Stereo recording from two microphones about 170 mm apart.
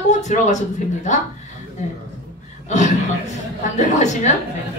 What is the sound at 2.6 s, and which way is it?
Speech, 45° left (ahead or behind).